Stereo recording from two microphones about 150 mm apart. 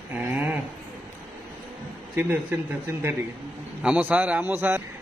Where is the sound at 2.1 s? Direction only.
15° right (ahead or behind).